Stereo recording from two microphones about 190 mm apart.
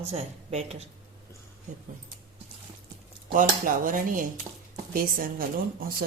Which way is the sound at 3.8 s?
45° right (ahead or behind).